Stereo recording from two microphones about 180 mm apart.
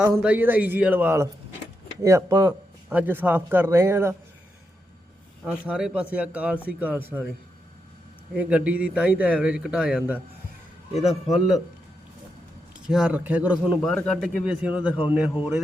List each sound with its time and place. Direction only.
0.0 s a man's voice: 5° right (ahead or behind)
2.9 s a man's voice: 10° right (ahead or behind)
5.5 s a man's voice: 5° right (ahead or behind)
8.3 s a man's voice: 10° right (ahead or behind)
10.9 s a man's voice: 35° left (ahead or behind)
11.3 s speech: centre (ahead or behind)
12.9 s a man's voice: 5° right (ahead or behind)
13.7 s speech: 5° left (ahead or behind)